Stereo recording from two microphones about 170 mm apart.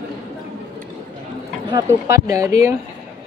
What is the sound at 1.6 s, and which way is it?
Speech, 20° right (ahead or behind).